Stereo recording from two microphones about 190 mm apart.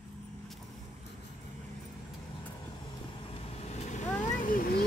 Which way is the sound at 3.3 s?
35° left (ahead or behind).